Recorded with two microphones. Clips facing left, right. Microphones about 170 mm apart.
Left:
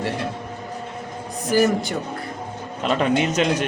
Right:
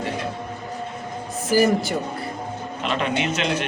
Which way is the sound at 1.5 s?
5° right (ahead or behind).